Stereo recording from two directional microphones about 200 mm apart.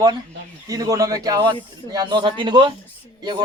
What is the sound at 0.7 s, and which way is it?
Speech, 20° right (ahead or behind).